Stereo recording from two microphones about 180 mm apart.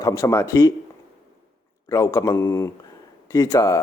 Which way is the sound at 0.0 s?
20° left (ahead or behind).